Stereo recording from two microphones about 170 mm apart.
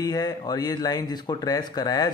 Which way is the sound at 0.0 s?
20° left (ahead or behind).